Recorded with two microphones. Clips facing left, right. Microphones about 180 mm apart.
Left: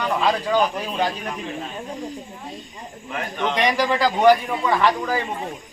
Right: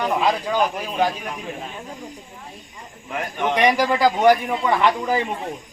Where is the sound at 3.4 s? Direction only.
10° right (ahead or behind).